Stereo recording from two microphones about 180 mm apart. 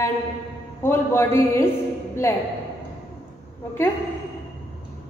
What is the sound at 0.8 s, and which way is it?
A woman's voice, 15° left (ahead or behind).